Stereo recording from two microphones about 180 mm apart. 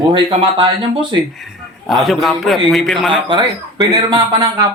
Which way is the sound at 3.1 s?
25° right (ahead or behind).